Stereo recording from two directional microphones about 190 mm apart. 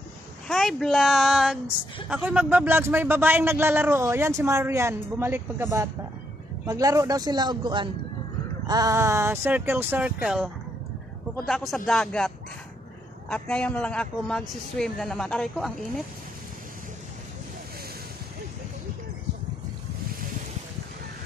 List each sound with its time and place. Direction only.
0.5 s a man's voice: centre (ahead or behind)
13.3 s a man's voice: 5° left (ahead or behind)